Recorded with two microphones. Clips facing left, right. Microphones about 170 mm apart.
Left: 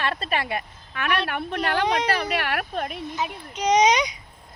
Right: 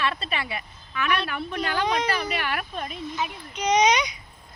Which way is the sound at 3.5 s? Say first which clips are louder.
Left 2 dB; 40° left (ahead or behind).